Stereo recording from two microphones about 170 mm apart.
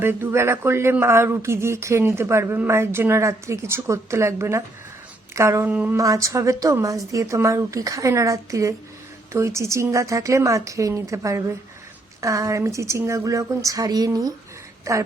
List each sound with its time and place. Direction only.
0.0 s a woman's voice: 15° right (ahead or behind)